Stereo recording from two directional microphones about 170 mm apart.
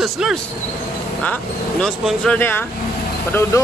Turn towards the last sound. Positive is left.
turn(degrees=15)  # may be behind; listen again after turning